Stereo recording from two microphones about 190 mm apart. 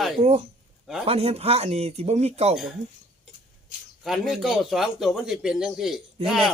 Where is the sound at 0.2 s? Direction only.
35° right (ahead or behind).